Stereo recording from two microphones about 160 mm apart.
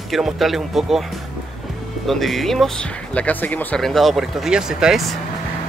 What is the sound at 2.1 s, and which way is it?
Speech, centre (ahead or behind).